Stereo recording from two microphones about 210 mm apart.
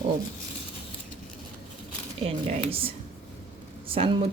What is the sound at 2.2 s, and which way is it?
Speech, 25° right (ahead or behind).